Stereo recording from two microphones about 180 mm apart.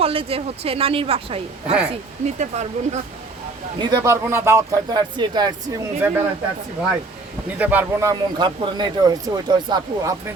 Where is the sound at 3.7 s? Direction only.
20° right (ahead or behind).